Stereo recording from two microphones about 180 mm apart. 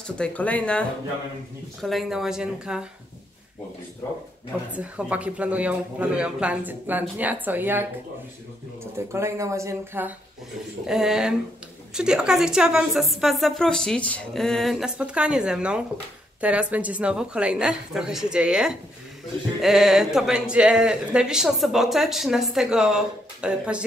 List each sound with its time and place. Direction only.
0.0 s speech: 5° left (ahead or behind)
4.7 s speech: 5° right (ahead or behind)
8.9 s speech: 15° right (ahead or behind)
10.9 s speech: 5° right (ahead or behind)